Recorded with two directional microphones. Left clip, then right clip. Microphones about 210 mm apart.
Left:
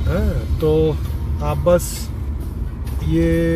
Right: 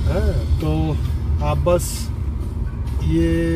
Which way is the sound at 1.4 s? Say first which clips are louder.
Left 3 dB; 15° left (ahead or behind).